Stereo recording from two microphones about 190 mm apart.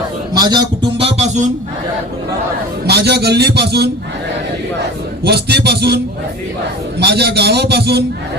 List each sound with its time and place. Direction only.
0.3 s a man's voice: 20° right (ahead or behind); by 1.5 s 35° right (ahead or behind)
2.8 s a man's voice: 60° right (ahead or behind)
5.2 s a man's voice: 60° right (ahead or behind)
7.0 s a man's voice: 60° right (ahead or behind)